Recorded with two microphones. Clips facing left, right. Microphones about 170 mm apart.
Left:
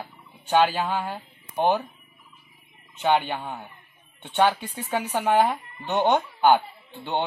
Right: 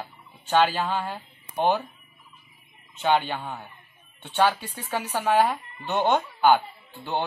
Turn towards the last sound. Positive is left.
turn(degrees=20)  # may be behind; listen again after turning